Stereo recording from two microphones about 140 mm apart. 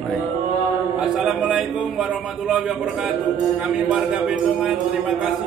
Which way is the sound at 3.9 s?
10° right (ahead or behind).